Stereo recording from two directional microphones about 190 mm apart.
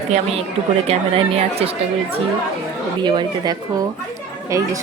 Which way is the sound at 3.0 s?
25° right (ahead or behind).